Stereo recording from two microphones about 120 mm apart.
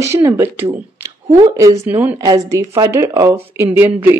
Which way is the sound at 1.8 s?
15° right (ahead or behind).